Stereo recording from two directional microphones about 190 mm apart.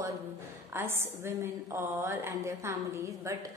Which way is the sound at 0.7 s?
10° right (ahead or behind).